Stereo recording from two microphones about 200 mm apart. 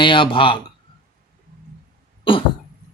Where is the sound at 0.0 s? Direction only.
25° left (ahead or behind).